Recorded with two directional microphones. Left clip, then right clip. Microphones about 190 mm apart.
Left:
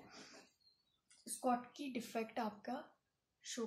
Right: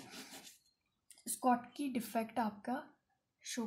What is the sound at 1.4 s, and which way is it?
A woman's voice, 25° right (ahead or behind).